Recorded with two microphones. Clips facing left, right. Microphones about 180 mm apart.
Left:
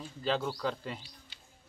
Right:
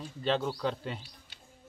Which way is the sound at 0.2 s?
Centre (ahead or behind).